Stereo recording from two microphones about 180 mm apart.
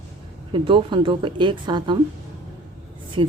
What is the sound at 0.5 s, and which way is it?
Speech, 30° right (ahead or behind).